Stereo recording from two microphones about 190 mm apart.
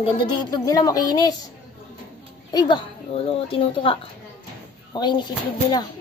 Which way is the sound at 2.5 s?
25° left (ahead or behind).